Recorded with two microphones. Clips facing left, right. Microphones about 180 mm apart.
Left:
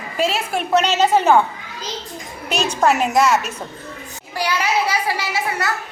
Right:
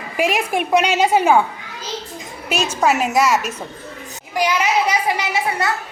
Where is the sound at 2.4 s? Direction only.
5° right (ahead or behind); by 5.7 s 20° right (ahead or behind).